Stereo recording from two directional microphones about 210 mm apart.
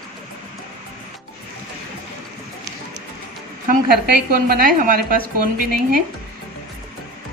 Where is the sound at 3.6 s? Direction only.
45° right (ahead or behind).